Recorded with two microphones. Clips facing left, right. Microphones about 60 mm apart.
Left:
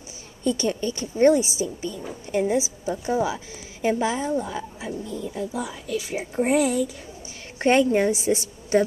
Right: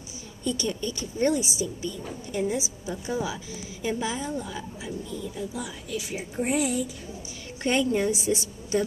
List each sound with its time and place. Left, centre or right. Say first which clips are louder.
0.4 s a woman's voice: left 5 dB; left